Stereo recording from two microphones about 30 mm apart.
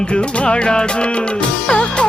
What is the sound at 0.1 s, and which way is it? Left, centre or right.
Music, left.